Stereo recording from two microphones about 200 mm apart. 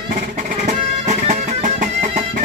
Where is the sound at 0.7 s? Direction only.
35° right (ahead or behind).